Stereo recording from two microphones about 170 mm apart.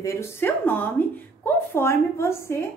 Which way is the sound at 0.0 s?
15° left (ahead or behind).